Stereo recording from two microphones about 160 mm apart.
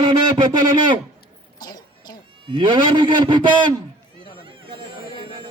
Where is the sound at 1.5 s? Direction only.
25° left (ahead or behind).